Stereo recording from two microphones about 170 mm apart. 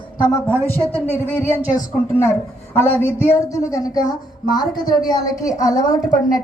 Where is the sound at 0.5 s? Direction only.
10° left (ahead or behind).